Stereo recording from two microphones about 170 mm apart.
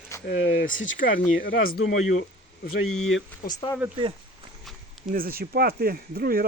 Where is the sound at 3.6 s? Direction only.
30° left (ahead or behind).